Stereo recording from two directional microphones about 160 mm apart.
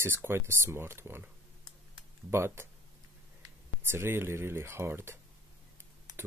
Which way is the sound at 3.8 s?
15° right (ahead or behind).